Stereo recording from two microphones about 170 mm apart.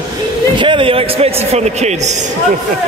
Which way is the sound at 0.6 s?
30° right (ahead or behind).